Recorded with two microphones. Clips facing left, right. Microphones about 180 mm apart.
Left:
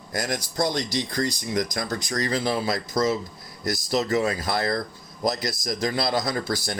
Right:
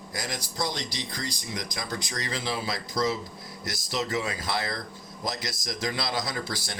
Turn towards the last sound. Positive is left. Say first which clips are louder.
# left 6 dB
turn(degrees=45)  # may be behind; listen again after turning